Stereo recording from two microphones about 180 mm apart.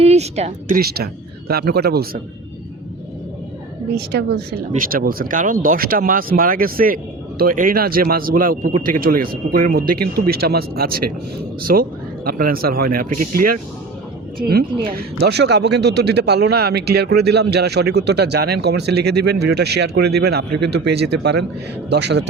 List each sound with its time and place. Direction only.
0.0 s speech: 35° right (ahead or behind)
0.8 s speech: 60° right (ahead or behind)
4.7 s speech: 55° right (ahead or behind); by 22.3 s 70° right (ahead or behind)